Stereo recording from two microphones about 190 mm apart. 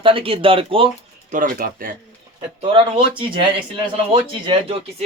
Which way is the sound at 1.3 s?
45° right (ahead or behind).